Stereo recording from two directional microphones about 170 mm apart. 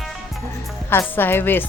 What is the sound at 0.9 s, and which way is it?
Speech, 10° left (ahead or behind).